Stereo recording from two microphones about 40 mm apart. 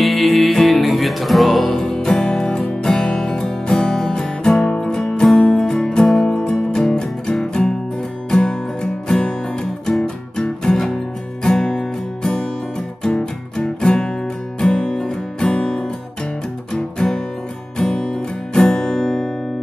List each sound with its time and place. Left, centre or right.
0.0 s music: centre
1.7 s music: centre
6.0 s music: centre
6.3 s music: centre